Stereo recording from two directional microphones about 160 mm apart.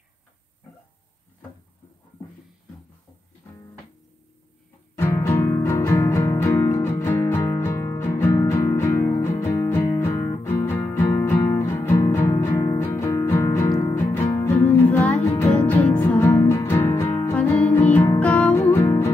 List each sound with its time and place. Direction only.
4.9 s music: 15° left (ahead or behind)